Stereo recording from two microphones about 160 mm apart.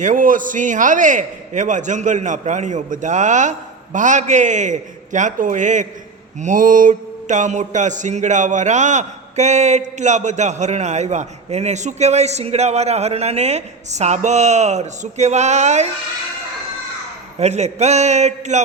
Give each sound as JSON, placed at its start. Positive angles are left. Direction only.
{"t": 0.0, "sound": "mantra", "side_deg": -55}
{"t": 17.3, "sound": "mantra", "side_deg": -45}